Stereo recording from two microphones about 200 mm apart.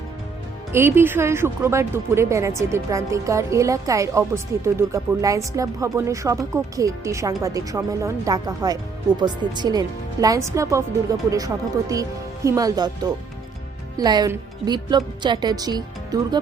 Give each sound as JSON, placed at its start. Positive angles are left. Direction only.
{"t": 0.7, "sound": "speech", "side_deg": -10}